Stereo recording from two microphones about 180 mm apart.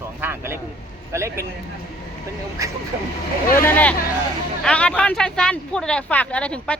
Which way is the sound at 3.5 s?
10° left (ahead or behind).